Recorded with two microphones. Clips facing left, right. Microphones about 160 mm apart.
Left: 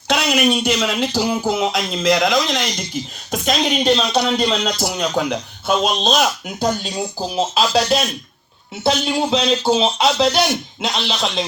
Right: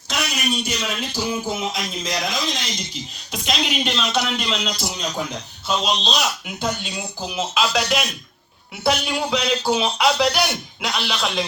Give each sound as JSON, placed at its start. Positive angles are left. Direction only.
{"t": 0.1, "sound": "speech", "side_deg": 70}
{"t": 5.8, "sound": "speech", "side_deg": 50}